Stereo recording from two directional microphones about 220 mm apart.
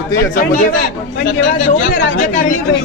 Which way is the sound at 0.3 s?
35° left (ahead or behind).